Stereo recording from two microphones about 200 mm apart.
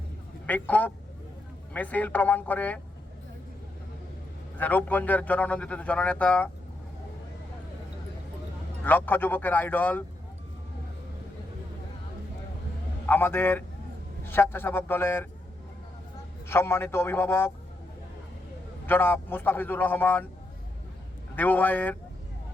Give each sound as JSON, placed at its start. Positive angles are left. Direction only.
{"t": 0.4, "sound": "a man's voice", "side_deg": 10}
{"t": 4.5, "sound": "a man's voice", "side_deg": 10}
{"t": 8.8, "sound": "a man's voice", "side_deg": 10}
{"t": 13.1, "sound": "a man's voice", "side_deg": 10}
{"t": 16.5, "sound": "a man's voice", "side_deg": 10}
{"t": 18.9, "sound": "a man's voice", "side_deg": 10}
{"t": 21.3, "sound": "a man's voice", "side_deg": 10}